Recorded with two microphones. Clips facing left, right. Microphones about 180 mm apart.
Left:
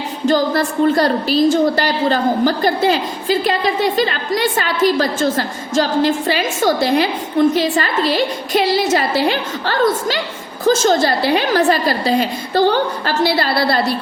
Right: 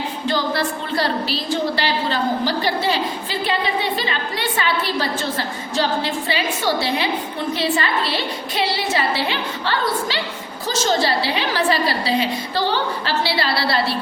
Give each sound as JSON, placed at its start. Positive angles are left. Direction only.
{"t": 0.3, "sound": "a woman's voice", "side_deg": 45}